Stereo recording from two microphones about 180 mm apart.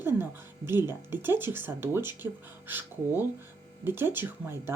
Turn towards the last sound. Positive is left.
turn(degrees=-15)  # may be behind; listen again after turning